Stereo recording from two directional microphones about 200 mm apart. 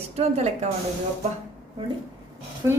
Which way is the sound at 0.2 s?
35° right (ahead or behind).